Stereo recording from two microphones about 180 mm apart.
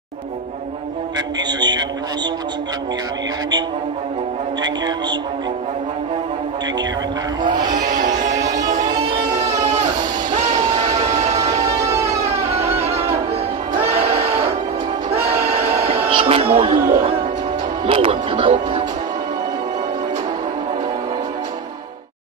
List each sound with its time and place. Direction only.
1.1 s music: 25° right (ahead or behind)
4.6 s speech: 25° right (ahead or behind)
7.4 s speech: 25° right (ahead or behind)
7.9 s music: 40° right (ahead or behind)
8.4 s music: 20° right (ahead or behind)
10.3 s music: 40° right (ahead or behind)
11.0 s train: 35° right (ahead or behind)
11.6 s music: 15° right (ahead or behind)
12.1 s music: 35° right (ahead or behind)
15.1 s music: 15° right (ahead or behind)
16.1 s music: 30° right (ahead or behind)
17.8 s speech: 30° right (ahead or behind)